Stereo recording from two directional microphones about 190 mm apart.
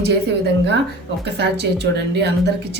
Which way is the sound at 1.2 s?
60° right (ahead or behind).